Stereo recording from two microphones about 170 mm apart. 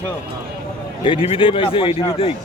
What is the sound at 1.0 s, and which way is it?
A man's voice, 30° left (ahead or behind).